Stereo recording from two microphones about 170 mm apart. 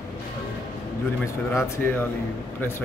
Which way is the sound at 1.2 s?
15° left (ahead or behind).